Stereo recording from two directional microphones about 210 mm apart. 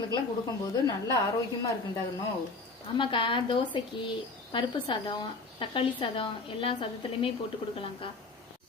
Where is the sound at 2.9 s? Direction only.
25° left (ahead or behind).